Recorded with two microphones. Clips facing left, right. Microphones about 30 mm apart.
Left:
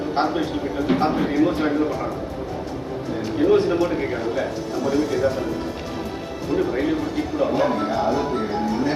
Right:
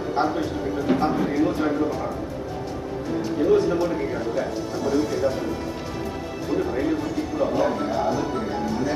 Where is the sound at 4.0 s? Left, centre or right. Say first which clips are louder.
Left 2 dB; left.